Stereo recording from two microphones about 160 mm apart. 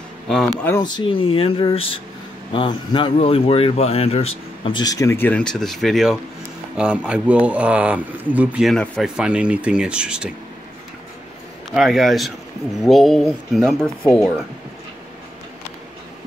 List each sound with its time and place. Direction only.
0.3 s speech: 5° left (ahead or behind)
0.7 s speech: 30° left (ahead or behind); by 10.3 s 5° right (ahead or behind)
11.7 s speech: centre (ahead or behind)